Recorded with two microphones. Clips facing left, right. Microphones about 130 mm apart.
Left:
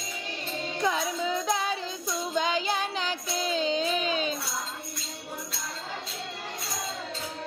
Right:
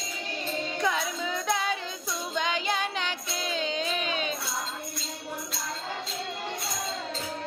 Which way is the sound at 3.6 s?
35° left (ahead or behind).